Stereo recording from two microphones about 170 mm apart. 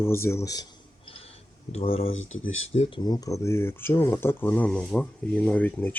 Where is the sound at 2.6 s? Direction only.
40° left (ahead or behind).